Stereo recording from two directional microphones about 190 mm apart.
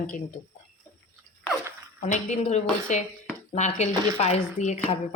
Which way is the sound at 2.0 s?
40° left (ahead or behind).